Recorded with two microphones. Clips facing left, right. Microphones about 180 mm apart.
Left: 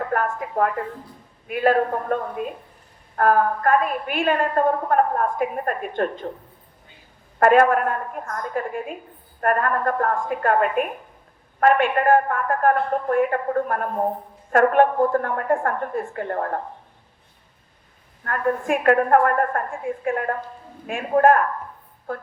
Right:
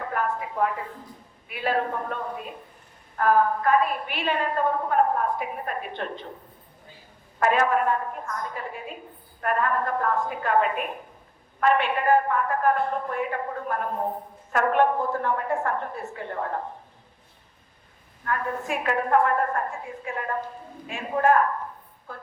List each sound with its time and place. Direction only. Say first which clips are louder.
0.1 s a woman's voice: left 4 dB; 50° left (ahead or behind)
7.3 s a woman's voice: left 6 dB; 55° left (ahead or behind)
18.3 s a woman's voice: left 6 dB; 55° left (ahead or behind)